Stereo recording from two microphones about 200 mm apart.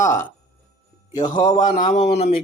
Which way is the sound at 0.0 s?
15° left (ahead or behind).